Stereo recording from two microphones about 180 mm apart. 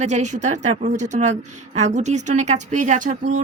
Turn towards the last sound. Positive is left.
turn(degrees=-45)  # may be behind; listen again after turning